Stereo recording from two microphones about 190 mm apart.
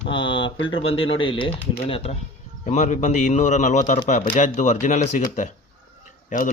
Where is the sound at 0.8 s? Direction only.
30° left (ahead or behind).